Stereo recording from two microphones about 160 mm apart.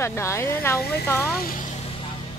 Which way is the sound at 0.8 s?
90° left.